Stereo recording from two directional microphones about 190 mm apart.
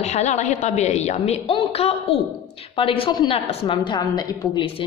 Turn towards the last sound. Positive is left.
turn(degrees=25)  # may be behind; listen again after turning